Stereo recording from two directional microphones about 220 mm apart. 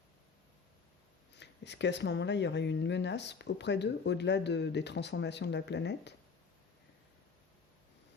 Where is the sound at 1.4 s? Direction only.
50° left (ahead or behind).